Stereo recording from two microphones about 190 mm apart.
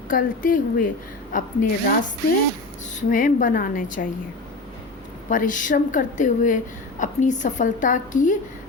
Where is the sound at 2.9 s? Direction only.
45° left (ahead or behind).